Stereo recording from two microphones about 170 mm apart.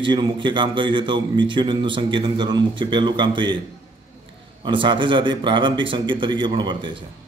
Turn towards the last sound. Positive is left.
turn(degrees=-25)  # may be behind; listen again after turning